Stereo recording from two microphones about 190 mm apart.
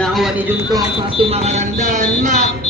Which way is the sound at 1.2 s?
35° right (ahead or behind).